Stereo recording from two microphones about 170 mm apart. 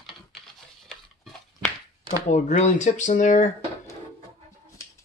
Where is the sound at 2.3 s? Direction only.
45° left (ahead or behind).